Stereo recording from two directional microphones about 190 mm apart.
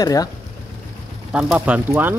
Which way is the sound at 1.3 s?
5° right (ahead or behind).